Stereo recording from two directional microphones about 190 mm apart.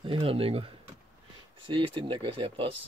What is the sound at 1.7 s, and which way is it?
Speech, 25° right (ahead or behind).